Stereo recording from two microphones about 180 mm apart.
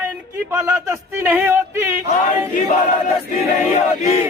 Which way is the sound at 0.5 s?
15° right (ahead or behind).